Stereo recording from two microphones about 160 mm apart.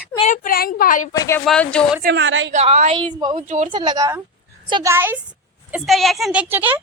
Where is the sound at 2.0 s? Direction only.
75° right (ahead or behind).